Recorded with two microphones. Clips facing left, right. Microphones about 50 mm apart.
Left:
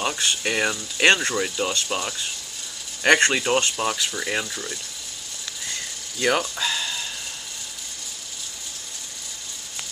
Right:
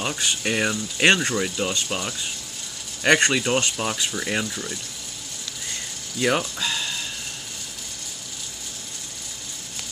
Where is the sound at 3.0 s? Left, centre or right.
Centre.